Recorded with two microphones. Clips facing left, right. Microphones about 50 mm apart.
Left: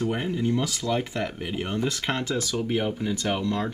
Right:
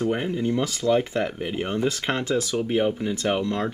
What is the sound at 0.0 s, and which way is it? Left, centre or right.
Speech, centre.